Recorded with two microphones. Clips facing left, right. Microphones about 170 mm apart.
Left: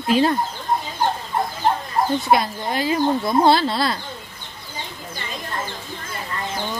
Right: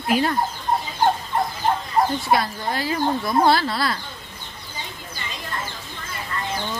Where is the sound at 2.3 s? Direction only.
20° left (ahead or behind).